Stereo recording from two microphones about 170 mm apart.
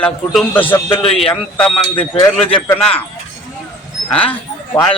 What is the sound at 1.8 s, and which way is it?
Speech, 25° left (ahead or behind).